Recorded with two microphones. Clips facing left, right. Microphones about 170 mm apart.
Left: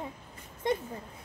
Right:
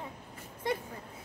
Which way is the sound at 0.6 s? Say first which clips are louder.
Left 3 dB; 20° left (ahead or behind).